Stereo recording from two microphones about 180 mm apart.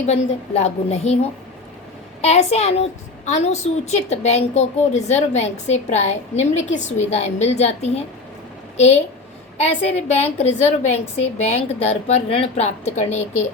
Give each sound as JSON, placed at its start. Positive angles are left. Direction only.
{"t": 0.0, "sound": "a woman's voice", "side_deg": 35}
{"t": 2.2, "sound": "a woman's voice", "side_deg": 35}
{"t": 9.6, "sound": "a woman's voice", "side_deg": 35}